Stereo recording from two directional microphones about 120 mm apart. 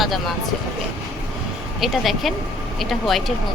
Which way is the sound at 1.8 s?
Centre (ahead or behind).